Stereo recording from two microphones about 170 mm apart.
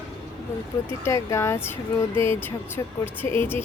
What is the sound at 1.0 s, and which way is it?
Speech, 15° left (ahead or behind).